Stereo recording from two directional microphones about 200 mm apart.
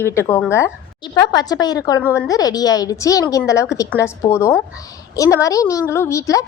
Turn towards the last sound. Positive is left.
turn(degrees=15)  # may be behind; listen again after turning